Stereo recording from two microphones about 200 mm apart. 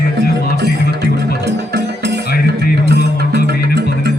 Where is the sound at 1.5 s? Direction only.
55° right (ahead or behind).